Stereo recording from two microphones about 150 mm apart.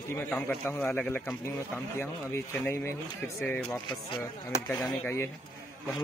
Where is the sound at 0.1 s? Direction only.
15° left (ahead or behind).